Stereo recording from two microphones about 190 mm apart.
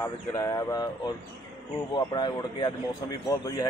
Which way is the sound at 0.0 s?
15° left (ahead or behind).